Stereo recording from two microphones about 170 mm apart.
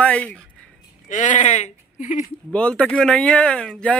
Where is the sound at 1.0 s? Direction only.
45° left (ahead or behind).